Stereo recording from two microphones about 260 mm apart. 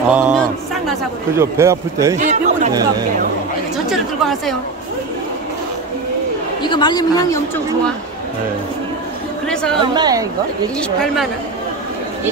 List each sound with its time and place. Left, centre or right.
0.1 s a man's voice: centre
2.1 s a man's voice: right
3.7 s speech: centre
6.6 s a man's voice: centre
9.5 s a woman's voice: centre
9.8 s a woman's voice: centre
10.8 s a woman's voice: centre